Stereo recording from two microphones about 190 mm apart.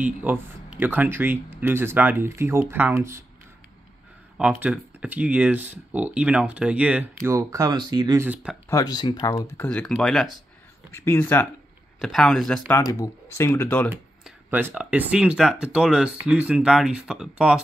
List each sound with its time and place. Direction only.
0.0 s speech: 10° right (ahead or behind)
4.4 s speech: 5° right (ahead or behind)
8.6 s speech: 20° left (ahead or behind)
9.6 s speech: 5° left (ahead or behind)
10.9 s speech: 15° left (ahead or behind)
12.8 s speech: 15° left (ahead or behind)
14.2 s speech: 10° right (ahead or behind)